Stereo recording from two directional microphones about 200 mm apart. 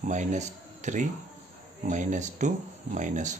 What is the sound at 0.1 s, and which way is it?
Speech, 35° right (ahead or behind).